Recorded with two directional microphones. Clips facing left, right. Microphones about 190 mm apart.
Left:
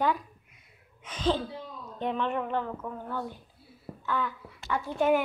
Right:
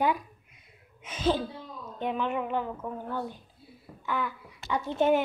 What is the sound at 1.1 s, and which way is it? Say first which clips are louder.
A woman's voice: right 1 dB; 10° right (ahead or behind).